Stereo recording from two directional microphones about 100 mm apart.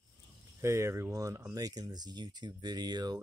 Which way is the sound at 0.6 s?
30° right (ahead or behind).